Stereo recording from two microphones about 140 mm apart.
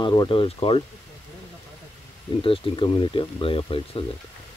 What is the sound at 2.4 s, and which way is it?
Speech, 40° left (ahead or behind).